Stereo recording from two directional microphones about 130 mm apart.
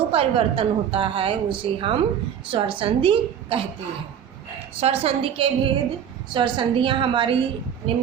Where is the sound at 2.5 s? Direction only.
40° right (ahead or behind).